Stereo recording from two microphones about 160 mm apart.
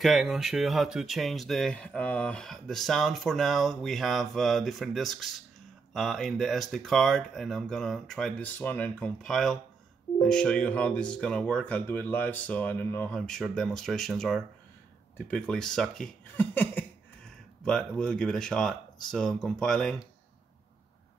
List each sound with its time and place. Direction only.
0.0 s speech: centre (ahead or behind)